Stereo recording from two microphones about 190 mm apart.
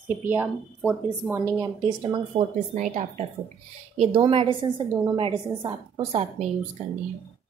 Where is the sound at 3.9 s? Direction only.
25° right (ahead or behind).